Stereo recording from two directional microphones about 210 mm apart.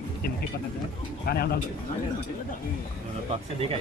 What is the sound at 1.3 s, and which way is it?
Speech, 45° left (ahead or behind).